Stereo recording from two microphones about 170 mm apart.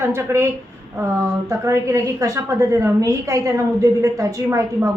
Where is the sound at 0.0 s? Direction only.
15° right (ahead or behind).